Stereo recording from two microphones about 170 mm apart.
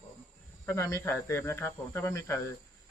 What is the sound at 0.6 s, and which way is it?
Speech, 20° left (ahead or behind).